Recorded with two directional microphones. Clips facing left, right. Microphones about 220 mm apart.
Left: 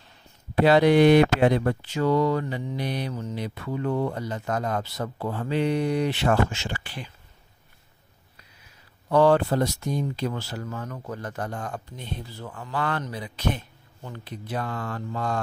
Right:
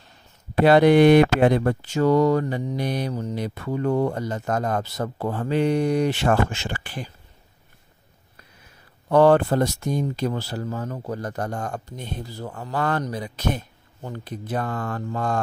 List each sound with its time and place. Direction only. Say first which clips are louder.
0.7 s speech: right 3 dB; 55° right (ahead or behind)
9.1 s speech: right 3 dB; 55° right (ahead or behind)